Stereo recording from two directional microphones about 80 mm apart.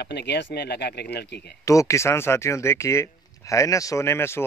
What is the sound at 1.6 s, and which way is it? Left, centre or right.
Speech, left.